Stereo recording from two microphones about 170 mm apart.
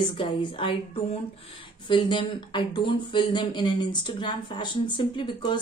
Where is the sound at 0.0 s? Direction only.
30° left (ahead or behind).